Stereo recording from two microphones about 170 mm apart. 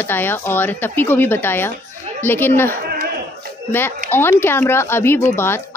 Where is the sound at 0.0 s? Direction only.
10° left (ahead or behind).